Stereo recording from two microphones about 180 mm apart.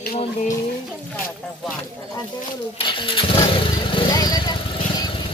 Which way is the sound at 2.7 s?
30° left (ahead or behind).